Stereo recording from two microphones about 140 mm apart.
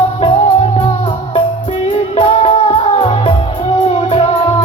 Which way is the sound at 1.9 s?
45° left (ahead or behind).